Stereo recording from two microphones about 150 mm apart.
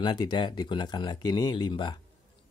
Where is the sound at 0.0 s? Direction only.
30° left (ahead or behind).